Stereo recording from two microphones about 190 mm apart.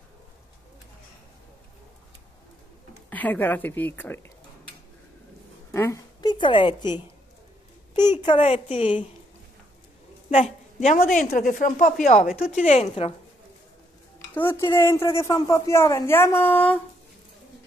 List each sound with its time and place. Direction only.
3.1 s a woman's voice: 10° left (ahead or behind)
5.7 s a woman's voice: 15° left (ahead or behind)
8.2 s a woman's voice: 25° left (ahead or behind)
10.3 s a woman's voice: 35° left (ahead or behind)
14.3 s a woman's voice: 10° left (ahead or behind)